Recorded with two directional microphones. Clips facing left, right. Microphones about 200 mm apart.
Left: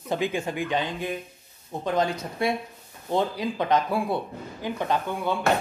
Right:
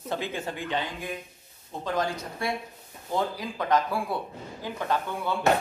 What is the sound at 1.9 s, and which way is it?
Speech, 20° left (ahead or behind).